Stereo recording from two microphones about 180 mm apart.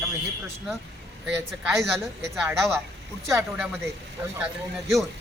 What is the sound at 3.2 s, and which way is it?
Speech, 15° right (ahead or behind).